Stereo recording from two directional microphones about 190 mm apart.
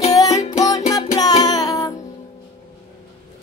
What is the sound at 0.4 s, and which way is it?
Music, 35° left (ahead or behind).